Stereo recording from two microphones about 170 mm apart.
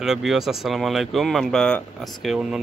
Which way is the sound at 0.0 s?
Centre (ahead or behind).